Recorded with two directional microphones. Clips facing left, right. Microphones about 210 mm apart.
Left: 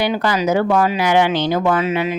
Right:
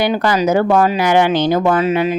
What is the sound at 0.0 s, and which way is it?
Speech, 45° right (ahead or behind).